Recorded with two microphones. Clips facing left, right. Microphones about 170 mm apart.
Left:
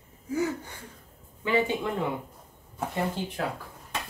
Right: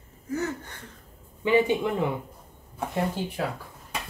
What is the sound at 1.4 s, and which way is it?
Speech, 15° right (ahead or behind).